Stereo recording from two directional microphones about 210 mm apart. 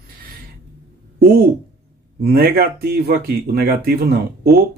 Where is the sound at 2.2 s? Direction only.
45° right (ahead or behind).